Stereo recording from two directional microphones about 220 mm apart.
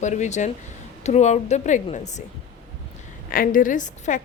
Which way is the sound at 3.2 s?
40° left (ahead or behind).